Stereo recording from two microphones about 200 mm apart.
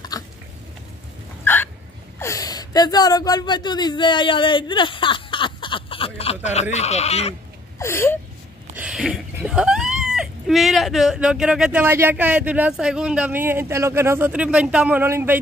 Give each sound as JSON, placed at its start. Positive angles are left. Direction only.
{"t": 0.1, "sound": "a sound", "side_deg": 20}
{"t": 1.4, "sound": "hiccup", "side_deg": 10}
{"t": 2.1, "sound": "speech", "side_deg": 15}
{"t": 7.8, "sound": "speech", "side_deg": 10}
{"t": 8.7, "sound": "speech", "side_deg": -5}